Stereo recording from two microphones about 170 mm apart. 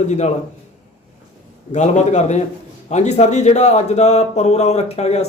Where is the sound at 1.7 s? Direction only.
45° left (ahead or behind).